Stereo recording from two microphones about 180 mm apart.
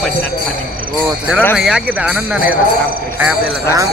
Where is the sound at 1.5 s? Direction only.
5° right (ahead or behind).